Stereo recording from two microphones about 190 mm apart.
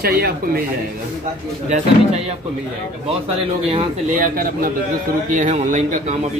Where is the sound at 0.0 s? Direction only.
55° right (ahead or behind).